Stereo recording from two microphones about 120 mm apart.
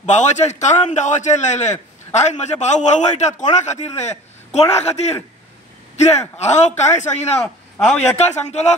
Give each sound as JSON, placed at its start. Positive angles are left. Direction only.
{"t": 0.0, "sound": "a man's voice", "side_deg": 85}
{"t": 7.8, "sound": "a man's voice", "side_deg": 10}
{"t": 8.2, "sound": "a man's voice", "side_deg": 70}